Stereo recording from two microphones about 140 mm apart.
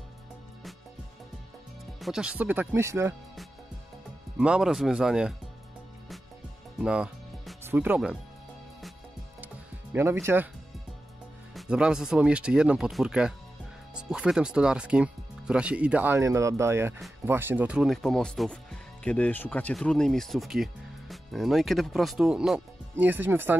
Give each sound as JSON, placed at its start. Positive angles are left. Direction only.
{"t": 2.0, "sound": "speech", "side_deg": 0}
{"t": 4.4, "sound": "speech", "side_deg": -5}
{"t": 6.8, "sound": "music", "side_deg": -5}
{"t": 9.9, "sound": "speech", "side_deg": -20}
{"t": 11.5, "sound": "speech", "side_deg": -5}
{"t": 17.8, "sound": "speech", "side_deg": 0}